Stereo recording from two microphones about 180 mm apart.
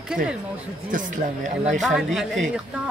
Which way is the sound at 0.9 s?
45° right (ahead or behind).